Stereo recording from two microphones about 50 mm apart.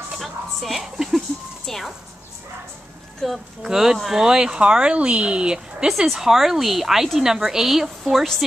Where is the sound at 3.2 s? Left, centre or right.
Centre.